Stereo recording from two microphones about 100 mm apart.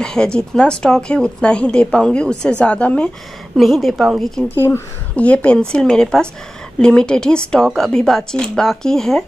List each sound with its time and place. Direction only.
0.0 s speech: 5° left (ahead or behind)
3.5 s a woman's voice: centre (ahead or behind)
4.6 s speech: 25° left (ahead or behind)
5.1 s speech: 15° left (ahead or behind)